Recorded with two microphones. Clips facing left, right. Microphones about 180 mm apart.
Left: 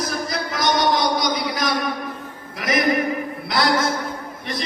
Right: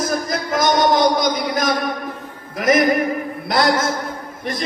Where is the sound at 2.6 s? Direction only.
45° right (ahead or behind).